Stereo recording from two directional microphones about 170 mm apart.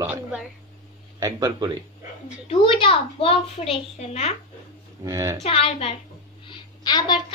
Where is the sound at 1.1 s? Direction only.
20° right (ahead or behind).